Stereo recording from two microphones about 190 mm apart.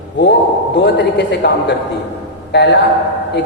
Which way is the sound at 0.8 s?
65° left (ahead or behind).